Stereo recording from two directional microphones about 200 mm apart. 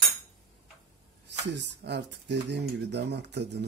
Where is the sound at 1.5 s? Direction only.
60° right (ahead or behind).